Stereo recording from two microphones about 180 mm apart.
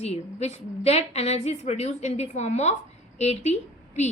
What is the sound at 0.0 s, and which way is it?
A woman's voice, 35° left (ahead or behind).